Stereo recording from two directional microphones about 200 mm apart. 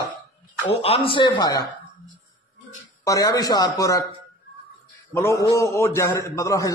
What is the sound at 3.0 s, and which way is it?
A man's voice, 20° left (ahead or behind).